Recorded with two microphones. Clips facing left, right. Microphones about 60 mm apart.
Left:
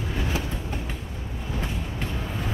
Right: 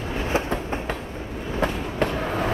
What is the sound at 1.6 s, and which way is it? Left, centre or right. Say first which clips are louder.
Vehicle: right 12 dB; right.